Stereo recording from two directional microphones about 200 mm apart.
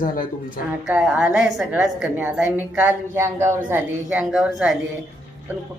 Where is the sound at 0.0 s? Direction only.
45° left (ahead or behind).